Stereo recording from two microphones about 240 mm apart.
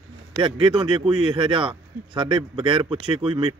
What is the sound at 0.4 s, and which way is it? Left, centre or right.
Speech, right.